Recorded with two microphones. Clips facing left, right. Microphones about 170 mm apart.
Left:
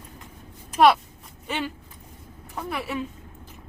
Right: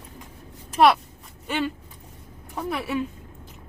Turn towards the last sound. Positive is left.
turn(degrees=0)  # may be behind; listen again after turning